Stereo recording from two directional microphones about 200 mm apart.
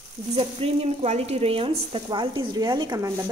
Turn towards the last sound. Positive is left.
turn(degrees=-15)  # may be behind; listen again after turning